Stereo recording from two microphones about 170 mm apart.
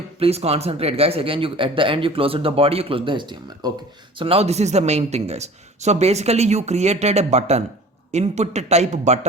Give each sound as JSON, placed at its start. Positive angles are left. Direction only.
{"t": 0.2, "sound": "speech", "side_deg": -35}